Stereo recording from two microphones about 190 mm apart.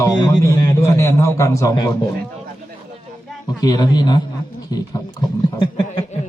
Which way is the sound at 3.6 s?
20° left (ahead or behind).